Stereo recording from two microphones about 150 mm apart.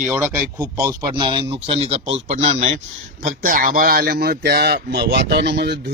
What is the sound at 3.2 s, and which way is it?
Speech, 65° right (ahead or behind).